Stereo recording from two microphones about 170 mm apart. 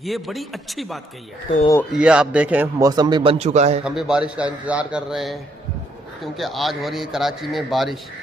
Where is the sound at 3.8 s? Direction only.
5° right (ahead or behind).